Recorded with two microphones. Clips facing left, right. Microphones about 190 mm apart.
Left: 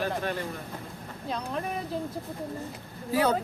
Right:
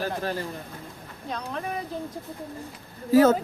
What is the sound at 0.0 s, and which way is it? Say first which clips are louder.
Speech: right 1 dB; 35° right (ahead or behind).